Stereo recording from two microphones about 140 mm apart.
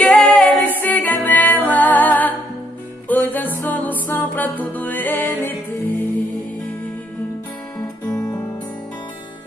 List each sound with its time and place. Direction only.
0.0 s music: 10° left (ahead or behind)
8.2 s music: 25° left (ahead or behind)